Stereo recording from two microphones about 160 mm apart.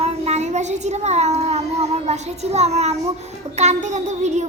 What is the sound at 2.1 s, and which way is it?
A child's voice, 40° right (ahead or behind).